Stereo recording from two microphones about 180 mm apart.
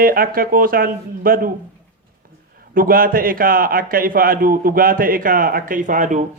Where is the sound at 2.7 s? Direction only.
50° right (ahead or behind).